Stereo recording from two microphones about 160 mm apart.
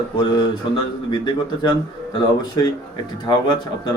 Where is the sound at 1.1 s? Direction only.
30° left (ahead or behind).